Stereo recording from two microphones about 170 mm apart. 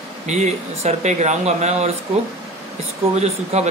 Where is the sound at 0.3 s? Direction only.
40° right (ahead or behind).